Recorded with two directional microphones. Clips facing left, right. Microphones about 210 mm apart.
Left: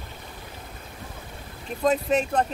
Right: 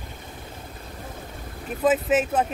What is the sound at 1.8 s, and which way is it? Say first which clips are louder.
Speech: right 2 dB; 5° right (ahead or behind).